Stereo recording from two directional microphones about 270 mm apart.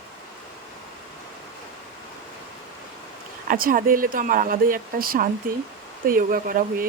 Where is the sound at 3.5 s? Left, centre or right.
Right.